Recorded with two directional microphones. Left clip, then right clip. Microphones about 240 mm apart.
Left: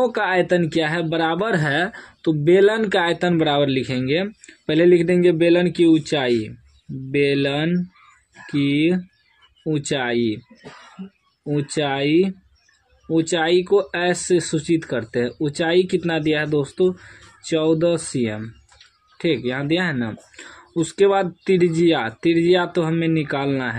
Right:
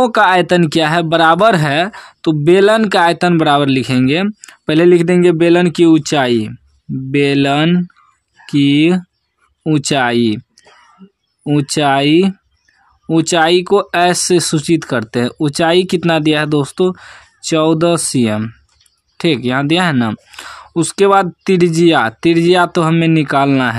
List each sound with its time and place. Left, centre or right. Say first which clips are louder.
0.0 s speech: right 9 dB; right
11.4 s speech: right 9 dB; right